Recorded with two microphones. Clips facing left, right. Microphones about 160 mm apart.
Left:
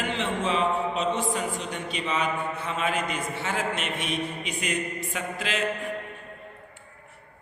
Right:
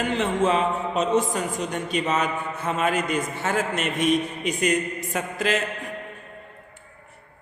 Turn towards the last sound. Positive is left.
turn(degrees=-45)  # may be behind; listen again after turning